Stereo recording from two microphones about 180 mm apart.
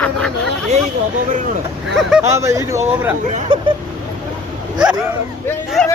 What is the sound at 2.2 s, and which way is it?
Speech, 15° right (ahead or behind).